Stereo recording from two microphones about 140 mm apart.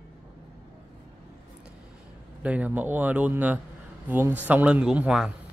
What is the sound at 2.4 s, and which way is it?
Speech, 10° right (ahead or behind).